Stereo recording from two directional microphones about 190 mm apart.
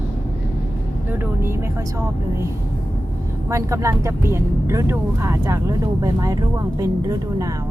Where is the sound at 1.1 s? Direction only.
10° right (ahead or behind).